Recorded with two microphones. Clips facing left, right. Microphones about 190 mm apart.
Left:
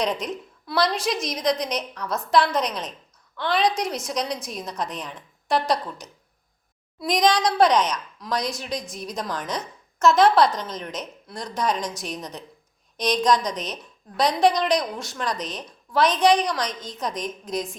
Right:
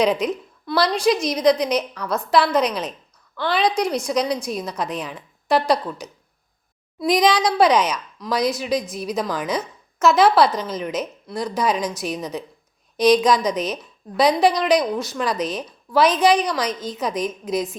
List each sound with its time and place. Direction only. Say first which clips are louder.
0.0 s a woman's voice: right 7 dB; centre (ahead or behind)